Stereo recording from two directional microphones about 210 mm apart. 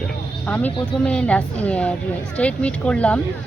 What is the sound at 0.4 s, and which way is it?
Speech, 5° left (ahead or behind).